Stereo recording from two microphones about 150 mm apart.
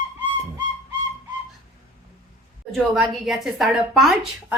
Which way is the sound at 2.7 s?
Centre (ahead or behind).